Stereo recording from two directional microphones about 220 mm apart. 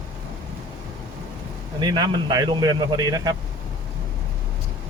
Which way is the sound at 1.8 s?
20° right (ahead or behind).